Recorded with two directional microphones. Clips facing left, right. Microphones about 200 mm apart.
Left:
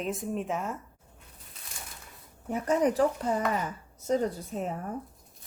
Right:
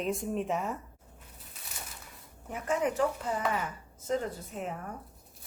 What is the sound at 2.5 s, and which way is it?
Speech, 35° left (ahead or behind).